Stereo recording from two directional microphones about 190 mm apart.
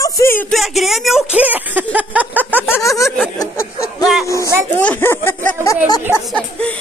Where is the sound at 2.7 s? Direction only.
15° left (ahead or behind).